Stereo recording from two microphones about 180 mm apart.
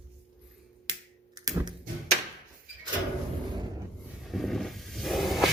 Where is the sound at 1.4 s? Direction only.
20° right (ahead or behind).